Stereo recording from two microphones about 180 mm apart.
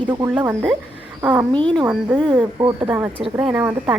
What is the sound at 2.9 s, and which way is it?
Speech, 10° right (ahead or behind).